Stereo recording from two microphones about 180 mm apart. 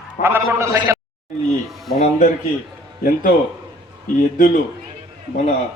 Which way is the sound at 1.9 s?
40° left (ahead or behind).